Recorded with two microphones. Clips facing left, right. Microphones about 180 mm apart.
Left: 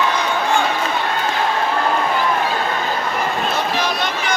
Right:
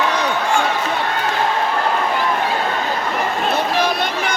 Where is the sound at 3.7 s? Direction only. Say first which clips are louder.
Right 2 dB; 55° right (ahead or behind).